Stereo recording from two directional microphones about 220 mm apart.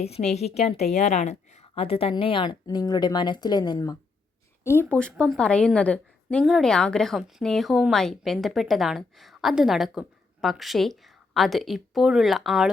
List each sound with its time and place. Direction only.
0.0 s a woman's voice: 30° left (ahead or behind); by 12.7 s centre (ahead or behind)